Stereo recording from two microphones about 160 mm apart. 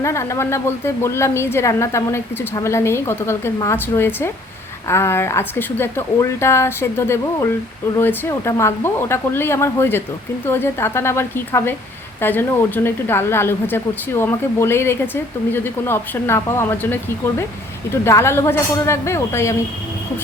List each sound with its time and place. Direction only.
0.0 s speech: 20° left (ahead or behind)